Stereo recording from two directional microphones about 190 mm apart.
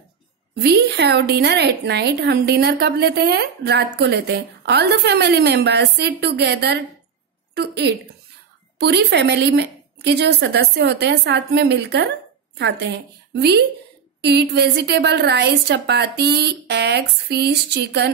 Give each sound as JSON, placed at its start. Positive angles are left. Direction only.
{"t": 0.6, "sound": "a woman's voice", "side_deg": -60}